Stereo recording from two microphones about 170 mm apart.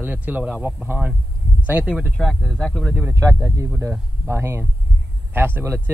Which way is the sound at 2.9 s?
15° right (ahead or behind).